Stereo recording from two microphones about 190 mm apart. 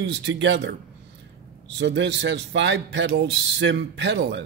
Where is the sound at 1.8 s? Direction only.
70° right (ahead or behind).